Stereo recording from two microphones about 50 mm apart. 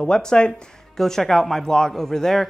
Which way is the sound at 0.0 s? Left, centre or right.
Centre.